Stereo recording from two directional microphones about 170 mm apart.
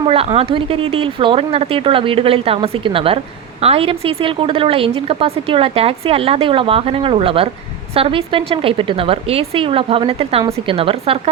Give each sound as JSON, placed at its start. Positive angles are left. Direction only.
{"t": 0.1, "sound": "a woman's voice", "side_deg": -35}